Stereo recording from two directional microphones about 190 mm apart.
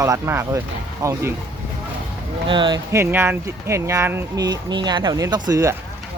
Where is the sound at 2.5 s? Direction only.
25° right (ahead or behind).